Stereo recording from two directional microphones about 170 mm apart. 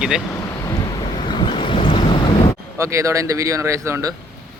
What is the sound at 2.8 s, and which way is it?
Speech, 15° right (ahead or behind).